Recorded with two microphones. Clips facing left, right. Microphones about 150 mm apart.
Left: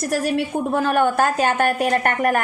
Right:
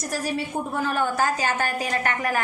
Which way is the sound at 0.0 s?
70° left (ahead or behind).